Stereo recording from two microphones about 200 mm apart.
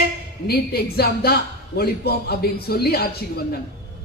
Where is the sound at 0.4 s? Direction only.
50° left (ahead or behind).